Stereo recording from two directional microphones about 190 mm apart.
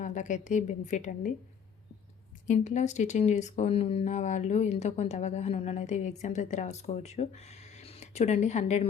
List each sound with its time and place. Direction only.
0.0 s speech: 40° left (ahead or behind)
2.5 s speech: 40° left (ahead or behind)